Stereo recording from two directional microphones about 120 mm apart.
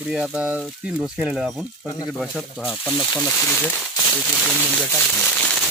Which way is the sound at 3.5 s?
10° left (ahead or behind).